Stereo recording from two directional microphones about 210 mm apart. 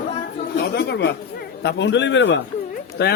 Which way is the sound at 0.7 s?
55° left (ahead or behind).